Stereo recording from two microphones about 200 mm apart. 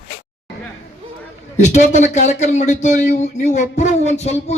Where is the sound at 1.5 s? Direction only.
35° left (ahead or behind).